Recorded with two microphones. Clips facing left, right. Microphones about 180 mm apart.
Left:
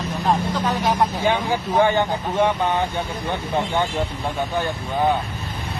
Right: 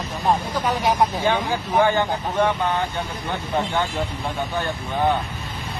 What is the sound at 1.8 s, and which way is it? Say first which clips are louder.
Speech: even; 15° left (ahead or behind).